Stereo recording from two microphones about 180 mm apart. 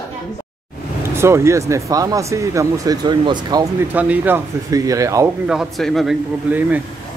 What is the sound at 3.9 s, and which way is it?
Speech, 10° right (ahead or behind).